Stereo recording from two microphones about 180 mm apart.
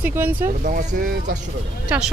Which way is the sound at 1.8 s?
5° right (ahead or behind).